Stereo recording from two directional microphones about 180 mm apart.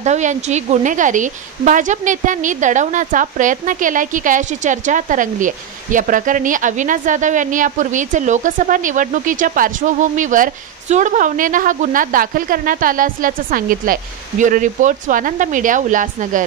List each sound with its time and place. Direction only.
0.0 s a woman's voice: 40° right (ahead or behind)